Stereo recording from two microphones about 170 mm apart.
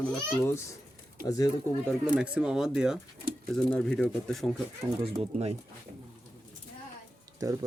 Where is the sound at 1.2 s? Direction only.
20° left (ahead or behind).